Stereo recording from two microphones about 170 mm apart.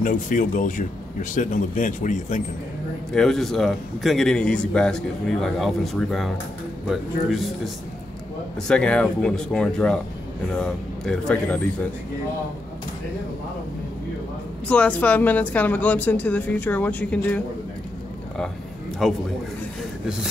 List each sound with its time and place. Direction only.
0.0 s speech: 50° left (ahead or behind)
3.1 s a man's voice: centre (ahead or behind)
11.1 s speech: 5° left (ahead or behind)
14.7 s speech: 10° left (ahead or behind)
19.0 s a man's voice: centre (ahead or behind)